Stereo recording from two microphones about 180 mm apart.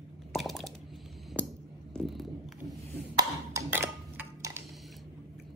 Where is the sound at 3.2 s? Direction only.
15° right (ahead or behind).